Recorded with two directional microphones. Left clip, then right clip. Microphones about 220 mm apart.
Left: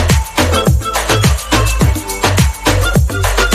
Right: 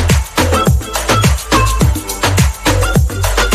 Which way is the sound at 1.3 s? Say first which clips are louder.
Right 2 dB; 65° left (ahead or behind).